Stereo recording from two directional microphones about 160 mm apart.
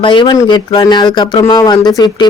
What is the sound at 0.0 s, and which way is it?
Speech, 30° left (ahead or behind).